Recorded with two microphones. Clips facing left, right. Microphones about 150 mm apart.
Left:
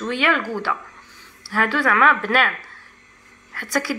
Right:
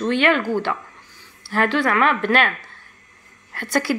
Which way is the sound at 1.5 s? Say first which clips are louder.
Right 1 dB; 20° right (ahead or behind).